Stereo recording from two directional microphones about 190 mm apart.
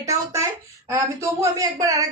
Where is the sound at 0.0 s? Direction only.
15° right (ahead or behind).